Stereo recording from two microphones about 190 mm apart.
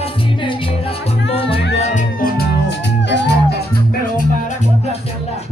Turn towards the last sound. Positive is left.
turn(degrees=65)  # may be behind; listen again after turning